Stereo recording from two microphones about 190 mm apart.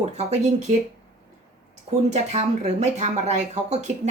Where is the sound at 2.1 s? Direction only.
35° right (ahead or behind).